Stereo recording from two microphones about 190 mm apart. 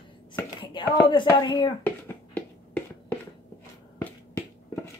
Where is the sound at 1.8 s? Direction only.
10° left (ahead or behind).